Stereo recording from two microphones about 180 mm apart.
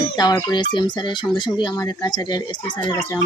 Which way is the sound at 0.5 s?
25° left (ahead or behind).